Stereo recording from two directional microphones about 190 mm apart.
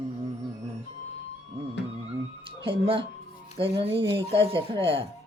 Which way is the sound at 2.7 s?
25° right (ahead or behind).